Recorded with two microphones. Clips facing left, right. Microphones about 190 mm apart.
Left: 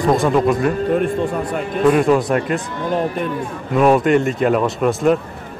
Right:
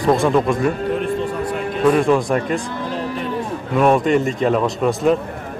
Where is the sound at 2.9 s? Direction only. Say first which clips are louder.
Left 6 dB; 55° left (ahead or behind).